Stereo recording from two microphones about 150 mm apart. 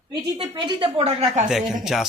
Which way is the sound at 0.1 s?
30° right (ahead or behind).